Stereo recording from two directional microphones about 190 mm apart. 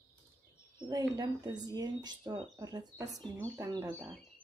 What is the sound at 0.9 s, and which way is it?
Speech, 20° right (ahead or behind).